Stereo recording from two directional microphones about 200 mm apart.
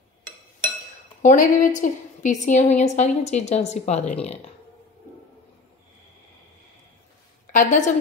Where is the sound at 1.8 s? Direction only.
40° left (ahead or behind).